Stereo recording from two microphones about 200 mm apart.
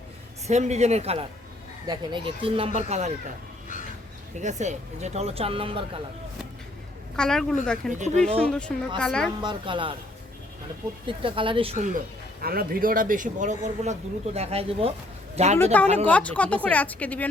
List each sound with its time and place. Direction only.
0.4 s speech: 35° right (ahead or behind)
4.4 s speech: 35° right (ahead or behind)
7.2 s a woman's voice: 5° left (ahead or behind)
7.9 s speech: 35° right (ahead or behind)
8.4 s a woman's voice: 5° left (ahead or behind)
9.4 s speech: 25° right (ahead or behind)
11.0 s speech: 25° right (ahead or behind)
12.4 s speech: 50° right (ahead or behind); by 14.9 s 30° right (ahead or behind)
15.5 s a woman's voice: 10° left (ahead or behind)